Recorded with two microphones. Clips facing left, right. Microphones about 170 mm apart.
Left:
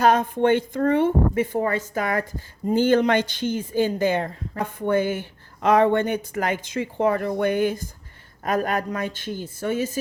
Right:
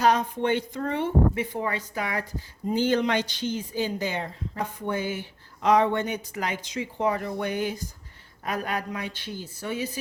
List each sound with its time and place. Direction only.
0.0 s speech: 50° left (ahead or behind)